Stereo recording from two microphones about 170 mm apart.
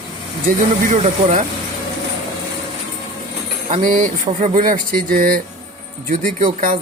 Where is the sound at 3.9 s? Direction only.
50° right (ahead or behind).